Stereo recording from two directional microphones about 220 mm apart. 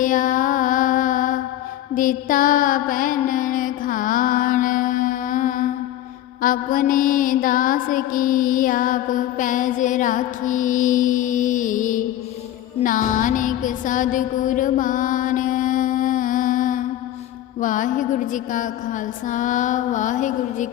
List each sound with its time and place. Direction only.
0.0 s mantra: 35° left (ahead or behind)
12.8 s music: 40° left (ahead or behind)
17.6 s mantra: 35° left (ahead or behind)